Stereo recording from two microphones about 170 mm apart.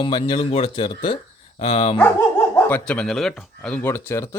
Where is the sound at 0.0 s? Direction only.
30° left (ahead or behind).